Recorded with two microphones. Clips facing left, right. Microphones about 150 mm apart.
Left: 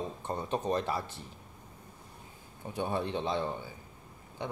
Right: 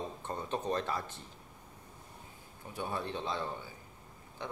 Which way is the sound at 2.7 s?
20° left (ahead or behind).